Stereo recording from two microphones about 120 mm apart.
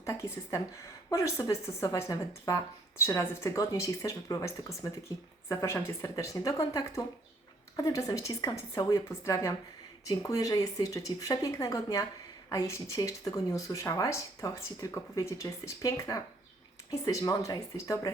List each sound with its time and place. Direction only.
0.0 s speech: 25° left (ahead or behind)